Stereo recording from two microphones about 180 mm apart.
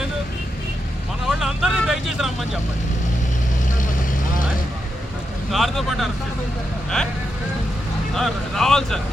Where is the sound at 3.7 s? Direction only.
45° left (ahead or behind).